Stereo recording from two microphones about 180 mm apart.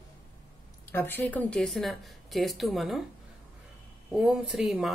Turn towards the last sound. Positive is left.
turn(degrees=0)  # may be behind; listen again after turning